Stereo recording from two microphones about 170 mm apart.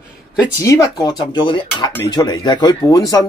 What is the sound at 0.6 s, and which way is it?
Speech, 20° left (ahead or behind).